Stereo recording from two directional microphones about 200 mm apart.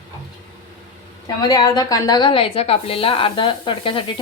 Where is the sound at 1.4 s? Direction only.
20° left (ahead or behind).